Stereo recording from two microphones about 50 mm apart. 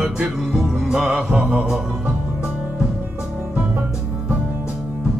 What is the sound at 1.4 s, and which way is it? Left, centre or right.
Mantra, right.